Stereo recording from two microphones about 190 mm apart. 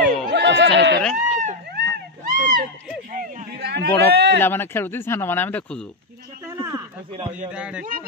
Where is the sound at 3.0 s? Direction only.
45° right (ahead or behind).